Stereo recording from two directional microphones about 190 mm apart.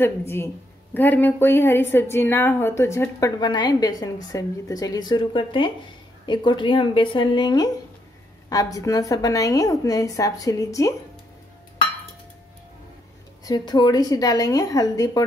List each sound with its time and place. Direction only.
0.9 s a woman's voice: 10° left (ahead or behind)
13.4 s a woman's voice: 20° left (ahead or behind)